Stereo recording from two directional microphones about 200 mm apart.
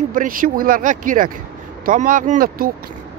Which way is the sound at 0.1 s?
45° right (ahead or behind).